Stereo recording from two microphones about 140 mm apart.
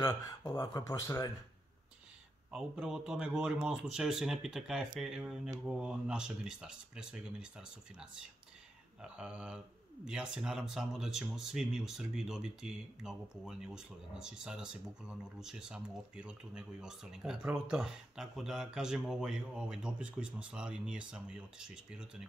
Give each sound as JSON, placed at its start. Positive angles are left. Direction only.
{"t": 0.5, "sound": "speech", "side_deg": 30}
{"t": 2.5, "sound": "speech", "side_deg": -5}